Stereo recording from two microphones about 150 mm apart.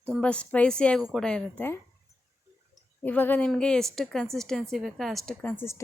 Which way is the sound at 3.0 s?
10° left (ahead or behind).